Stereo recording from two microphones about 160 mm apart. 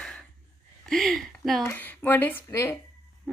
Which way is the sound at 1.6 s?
10° left (ahead or behind).